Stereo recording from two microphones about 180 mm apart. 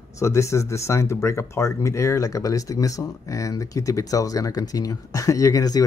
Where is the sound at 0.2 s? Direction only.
15° left (ahead or behind).